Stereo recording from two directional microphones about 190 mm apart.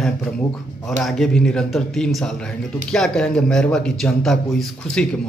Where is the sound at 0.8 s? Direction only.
Centre (ahead or behind).